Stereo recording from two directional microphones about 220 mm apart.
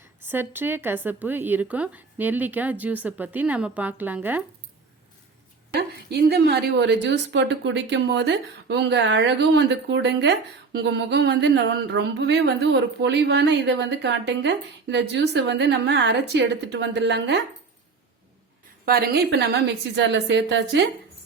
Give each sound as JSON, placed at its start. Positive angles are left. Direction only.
{"t": 0.0, "sound": "speech", "side_deg": -10}
{"t": 5.7, "sound": "a woman's voice", "side_deg": -45}
{"t": 18.9, "sound": "a woman's voice", "side_deg": -45}